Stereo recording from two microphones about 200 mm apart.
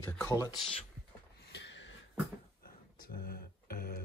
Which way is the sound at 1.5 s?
60° left (ahead or behind).